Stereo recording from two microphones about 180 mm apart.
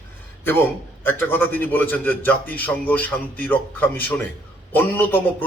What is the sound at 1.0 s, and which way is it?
A man's voice, 10° left (ahead or behind).